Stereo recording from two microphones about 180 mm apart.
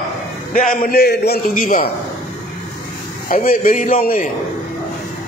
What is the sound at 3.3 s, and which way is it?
A man's voice, 45° left (ahead or behind).